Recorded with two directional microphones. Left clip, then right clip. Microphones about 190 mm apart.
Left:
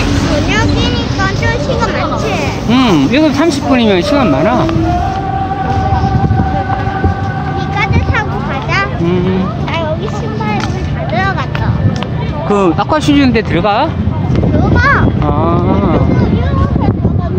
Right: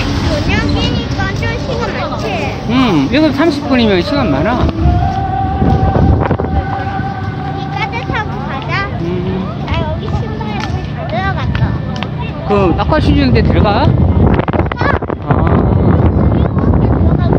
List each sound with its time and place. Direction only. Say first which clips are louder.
2.7 s speech: left 2 dB; 10° left (ahead or behind)
12.4 s speech: left 1 dB; 15° left (ahead or behind)